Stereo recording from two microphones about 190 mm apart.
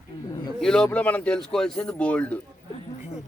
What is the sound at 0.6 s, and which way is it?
A man's voice, 5° left (ahead or behind).